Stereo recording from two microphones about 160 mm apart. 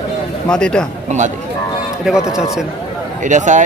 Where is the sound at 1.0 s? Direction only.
50° right (ahead or behind).